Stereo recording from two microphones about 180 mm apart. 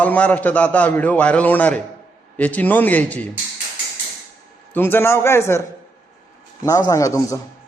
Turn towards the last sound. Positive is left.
turn(degrees=15)  # may be behind; listen again after turning